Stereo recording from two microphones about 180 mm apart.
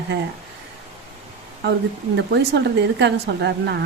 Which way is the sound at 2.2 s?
70° right (ahead or behind).